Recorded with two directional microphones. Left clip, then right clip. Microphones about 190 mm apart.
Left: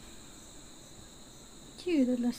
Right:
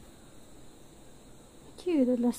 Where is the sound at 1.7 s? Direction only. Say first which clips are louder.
Right 2 dB; 25° right (ahead or behind).